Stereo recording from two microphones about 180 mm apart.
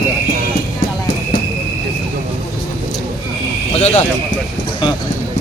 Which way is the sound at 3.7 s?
40° left (ahead or behind).